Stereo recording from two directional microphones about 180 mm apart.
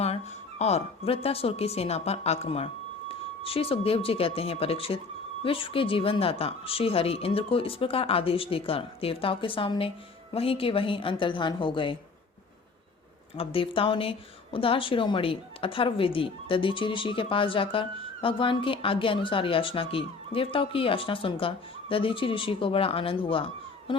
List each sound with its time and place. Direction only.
0.6 s speech: 35° left (ahead or behind)
13.3 s speech: 30° left (ahead or behind)